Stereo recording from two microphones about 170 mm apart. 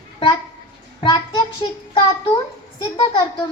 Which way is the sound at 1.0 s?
25° left (ahead or behind).